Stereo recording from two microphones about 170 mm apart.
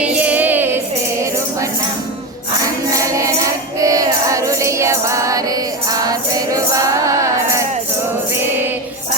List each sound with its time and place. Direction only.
0.0 s music: 10° right (ahead or behind)
2.9 s music: 20° right (ahead or behind)